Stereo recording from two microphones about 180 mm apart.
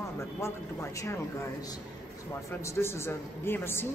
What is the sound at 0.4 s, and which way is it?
Speech, 15° left (ahead or behind).